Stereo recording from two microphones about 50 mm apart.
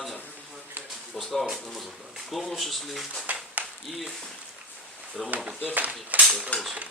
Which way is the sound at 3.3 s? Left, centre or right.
Right.